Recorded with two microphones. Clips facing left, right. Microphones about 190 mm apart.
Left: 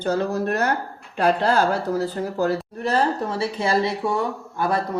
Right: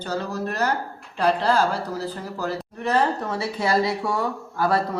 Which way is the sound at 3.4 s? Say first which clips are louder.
Even; 25° left (ahead or behind).